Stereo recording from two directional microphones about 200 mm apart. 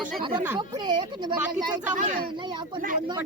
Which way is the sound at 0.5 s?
20° right (ahead or behind).